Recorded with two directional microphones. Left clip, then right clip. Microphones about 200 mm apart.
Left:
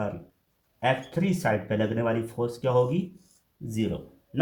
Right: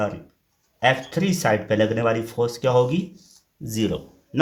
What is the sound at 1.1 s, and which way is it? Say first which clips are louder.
Speech: right 5 dB; 45° right (ahead or behind).